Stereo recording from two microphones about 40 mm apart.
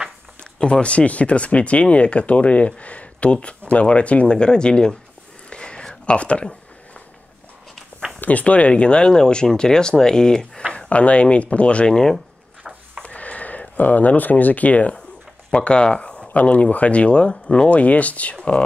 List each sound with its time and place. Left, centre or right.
0.4 s speech: left
5.5 s a sound: left
6.0 s speech: left
8.2 s speech: left; by 10.6 s centre
10.7 s speech: left
11.9 s speech: centre
13.0 s a sound: left
15.5 s speech: left
17.6 s speech: left